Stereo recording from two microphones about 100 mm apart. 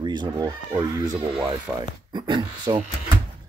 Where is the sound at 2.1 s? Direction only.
50° right (ahead or behind).